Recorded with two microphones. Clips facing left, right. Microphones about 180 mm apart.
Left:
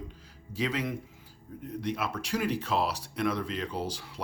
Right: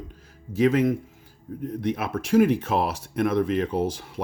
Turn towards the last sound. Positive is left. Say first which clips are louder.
# right 9 dB
turn(degrees=-50)  # may be behind; listen again after turning